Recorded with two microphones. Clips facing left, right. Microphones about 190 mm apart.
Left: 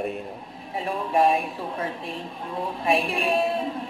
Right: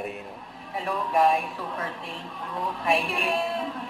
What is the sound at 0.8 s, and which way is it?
Speech, 30° left (ahead or behind).